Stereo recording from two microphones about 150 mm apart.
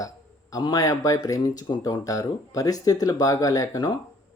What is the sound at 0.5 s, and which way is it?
Speech, 25° left (ahead or behind).